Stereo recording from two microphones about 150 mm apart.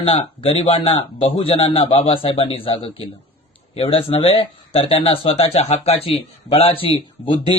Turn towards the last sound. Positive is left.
turn(degrees=35)  # may be behind; listen again after turning